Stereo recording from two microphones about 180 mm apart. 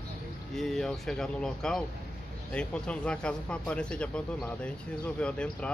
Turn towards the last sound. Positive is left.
turn(degrees=5)  # may be behind; listen again after turning